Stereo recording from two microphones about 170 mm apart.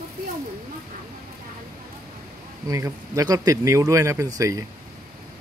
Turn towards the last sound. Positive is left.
turn(degrees=-20)  # may be behind; listen again after turning